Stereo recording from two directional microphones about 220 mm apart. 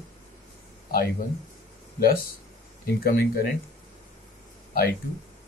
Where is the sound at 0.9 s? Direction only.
40° left (ahead or behind).